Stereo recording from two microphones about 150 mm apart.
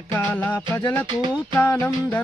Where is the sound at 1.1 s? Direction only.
30° right (ahead or behind).